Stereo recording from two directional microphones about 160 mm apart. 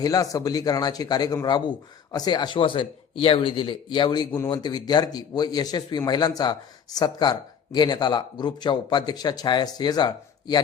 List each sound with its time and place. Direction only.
0.0 s speech: 20° left (ahead or behind)